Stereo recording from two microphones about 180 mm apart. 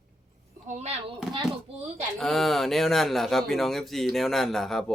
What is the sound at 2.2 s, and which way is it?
Speech, centre (ahead or behind).